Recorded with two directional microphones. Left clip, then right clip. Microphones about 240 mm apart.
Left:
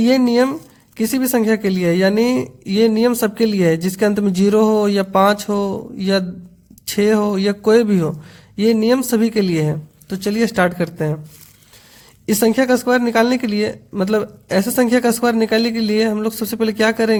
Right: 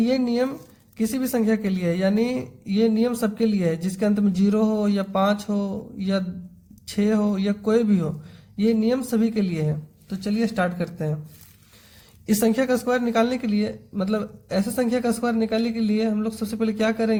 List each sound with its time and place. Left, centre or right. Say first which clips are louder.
0.0 s a woman's voice: left 8 dB; left
12.2 s a woman's voice: left 6 dB; left